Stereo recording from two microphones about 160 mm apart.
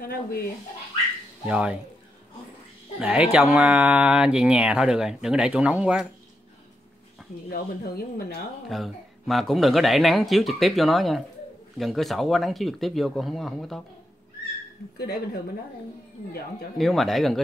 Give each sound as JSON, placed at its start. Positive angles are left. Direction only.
{"t": 0.0, "sound": "speech", "side_deg": 70}
{"t": 1.4, "sound": "speech", "side_deg": -5}
{"t": 3.0, "sound": "speech", "side_deg": -5}
{"t": 7.4, "sound": "speech", "side_deg": 75}
{"t": 8.6, "sound": "speech", "side_deg": 0}
{"t": 16.7, "sound": "speech", "side_deg": 0}